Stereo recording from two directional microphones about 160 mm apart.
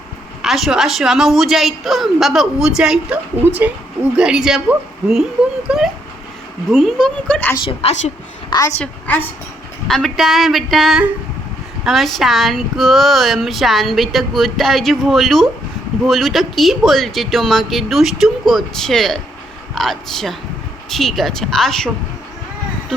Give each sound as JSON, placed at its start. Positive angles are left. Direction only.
{"t": 0.4, "sound": "speech", "side_deg": 0}
{"t": 7.5, "sound": "a woman's voice", "side_deg": 35}
{"t": 8.8, "sound": "a woman's voice", "side_deg": 10}